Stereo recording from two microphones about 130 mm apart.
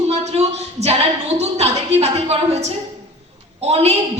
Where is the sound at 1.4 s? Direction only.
55° right (ahead or behind).